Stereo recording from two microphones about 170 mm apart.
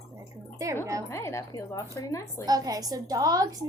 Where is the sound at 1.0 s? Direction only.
15° left (ahead or behind).